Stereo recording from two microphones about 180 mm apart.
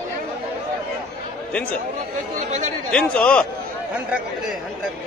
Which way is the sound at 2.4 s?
40° right (ahead or behind).